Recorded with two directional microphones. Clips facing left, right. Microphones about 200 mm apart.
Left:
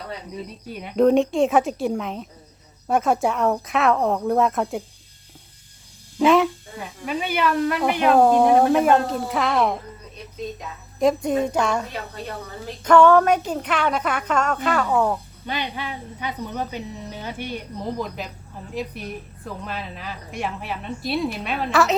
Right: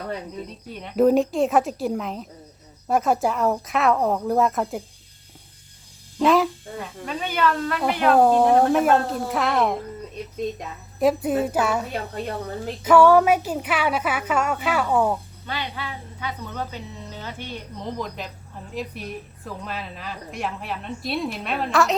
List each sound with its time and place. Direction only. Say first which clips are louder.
0.7 s a woman's voice: left 2 dB; 5° left (ahead or behind)
0.9 s a woman's voice: left 1 dB; 5° right (ahead or behind)
6.1 s a woman's voice: left 2 dB; centre (ahead or behind)
8.7 s a woman's voice: left 1 dB; centre (ahead or behind)
11.0 s a woman's voice: left 1 dB; 5° right (ahead or behind)
15.4 s a woman's voice: left 3 dB; 20° left (ahead or behind)
17.9 s a woman's voice: left 2 dB; centre (ahead or behind)